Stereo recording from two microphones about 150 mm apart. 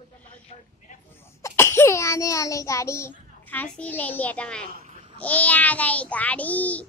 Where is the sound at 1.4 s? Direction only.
15° left (ahead or behind).